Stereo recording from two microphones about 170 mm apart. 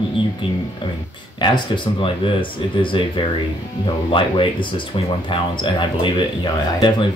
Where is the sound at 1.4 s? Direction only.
30° left (ahead or behind).